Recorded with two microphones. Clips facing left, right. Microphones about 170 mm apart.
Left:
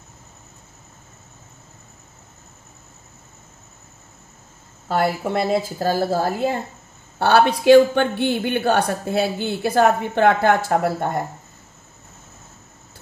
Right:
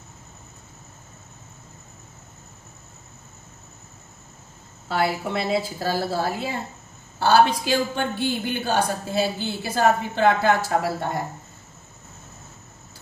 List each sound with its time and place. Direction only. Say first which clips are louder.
4.8 s a woman's voice: left 3 dB; 45° left (ahead or behind)
7.2 s speech: left 1 dB; 60° left (ahead or behind)